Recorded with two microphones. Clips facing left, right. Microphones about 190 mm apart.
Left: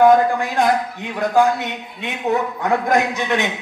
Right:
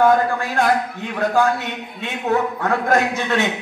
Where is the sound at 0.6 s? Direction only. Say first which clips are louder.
Left 1 dB; 15° left (ahead or behind).